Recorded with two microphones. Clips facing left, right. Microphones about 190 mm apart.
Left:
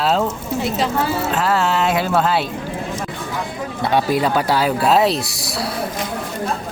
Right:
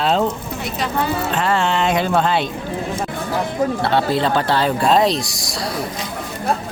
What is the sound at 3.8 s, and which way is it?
Speech, 15° left (ahead or behind).